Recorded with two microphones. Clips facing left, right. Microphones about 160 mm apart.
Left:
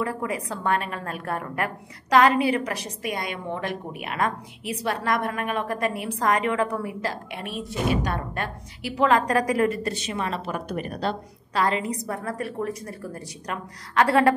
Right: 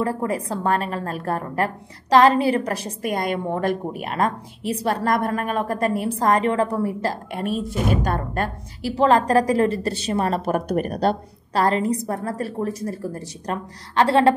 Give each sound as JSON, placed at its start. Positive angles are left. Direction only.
{"t": 0.0, "sound": "a woman's voice", "side_deg": -40}